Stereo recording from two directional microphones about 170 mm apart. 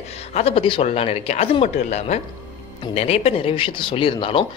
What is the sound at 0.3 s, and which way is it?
A man's voice, 35° left (ahead or behind).